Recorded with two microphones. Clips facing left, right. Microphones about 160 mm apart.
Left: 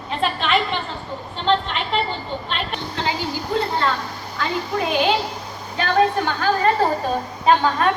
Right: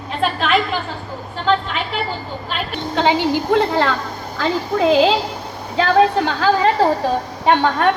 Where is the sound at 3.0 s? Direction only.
85° right.